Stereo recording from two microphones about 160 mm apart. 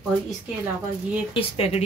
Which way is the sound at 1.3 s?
40° left (ahead or behind).